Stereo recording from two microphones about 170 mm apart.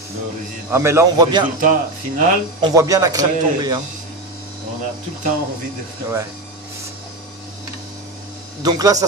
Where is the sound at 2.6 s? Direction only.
25° right (ahead or behind).